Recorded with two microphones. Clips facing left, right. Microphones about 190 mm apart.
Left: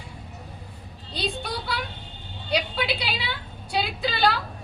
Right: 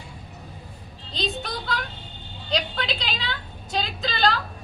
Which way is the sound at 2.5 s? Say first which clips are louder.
Left 1 dB; 10° left (ahead or behind).